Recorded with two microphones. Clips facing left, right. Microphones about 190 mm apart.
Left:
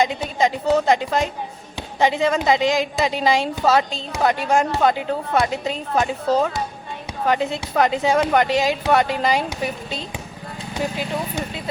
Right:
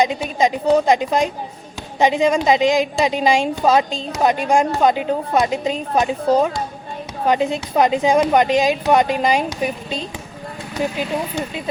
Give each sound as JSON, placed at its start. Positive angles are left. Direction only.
{"t": 0.3, "sound": "speech", "side_deg": -20}